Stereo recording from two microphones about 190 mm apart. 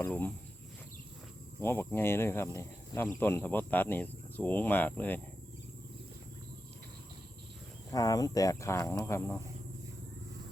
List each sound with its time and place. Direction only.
0.0 s speech: 10° left (ahead or behind)
1.5 s speech: 10° left (ahead or behind)
7.9 s speech: 20° left (ahead or behind)